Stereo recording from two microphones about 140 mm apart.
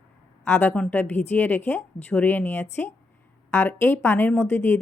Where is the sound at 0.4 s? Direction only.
10° left (ahead or behind).